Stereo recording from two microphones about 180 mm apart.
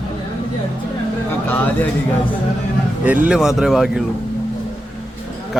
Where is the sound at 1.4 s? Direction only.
10° left (ahead or behind).